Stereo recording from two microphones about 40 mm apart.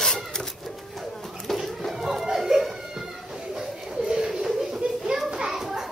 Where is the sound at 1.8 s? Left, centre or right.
Centre.